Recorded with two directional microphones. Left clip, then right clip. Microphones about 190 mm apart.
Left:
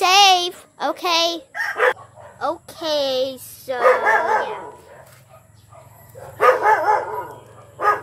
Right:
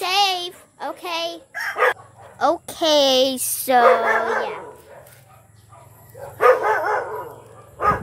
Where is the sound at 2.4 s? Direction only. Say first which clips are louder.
Right 5 dB; 40° right (ahead or behind); by 3.8 s 55° right (ahead or behind).